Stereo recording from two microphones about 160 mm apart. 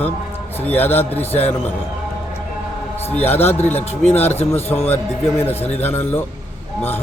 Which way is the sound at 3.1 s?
15° left (ahead or behind).